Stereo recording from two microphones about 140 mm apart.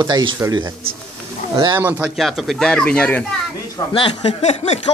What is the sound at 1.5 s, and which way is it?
Speech, 20° right (ahead or behind).